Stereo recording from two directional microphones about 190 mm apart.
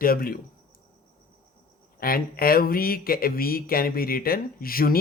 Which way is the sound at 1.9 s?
50° left (ahead or behind).